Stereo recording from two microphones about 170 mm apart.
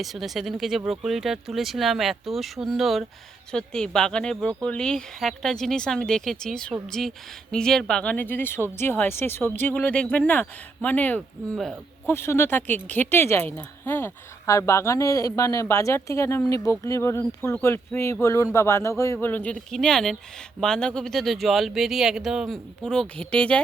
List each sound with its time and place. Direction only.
0.0 s speech: centre (ahead or behind)